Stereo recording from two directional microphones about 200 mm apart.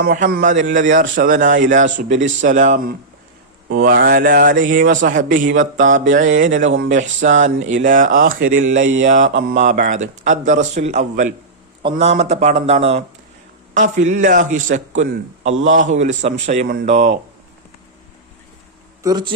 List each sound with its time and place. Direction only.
0.0 s a man's voice: 45° right (ahead or behind)
6.7 s speech: 70° right (ahead or behind)
6.9 s a man's voice: 40° right (ahead or behind)
15.5 s speech: 75° right (ahead or behind)
16.0 s a man's voice: 35° right (ahead or behind)
19.0 s speech: 20° right (ahead or behind)